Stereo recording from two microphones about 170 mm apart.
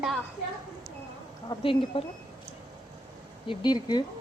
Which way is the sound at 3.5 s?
25° left (ahead or behind).